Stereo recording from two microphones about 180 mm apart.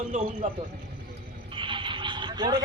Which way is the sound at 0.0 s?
45° right (ahead or behind).